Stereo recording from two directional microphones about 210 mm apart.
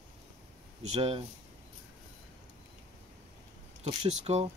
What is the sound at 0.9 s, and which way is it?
Speech, 30° right (ahead or behind).